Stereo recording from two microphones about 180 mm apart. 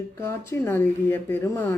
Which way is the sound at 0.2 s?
15° left (ahead or behind).